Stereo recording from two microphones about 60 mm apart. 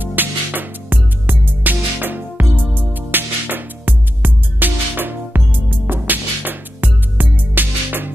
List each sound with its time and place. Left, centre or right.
0.0 s music: right